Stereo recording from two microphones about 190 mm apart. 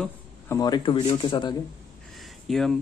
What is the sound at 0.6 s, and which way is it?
Speech, 25° left (ahead or behind).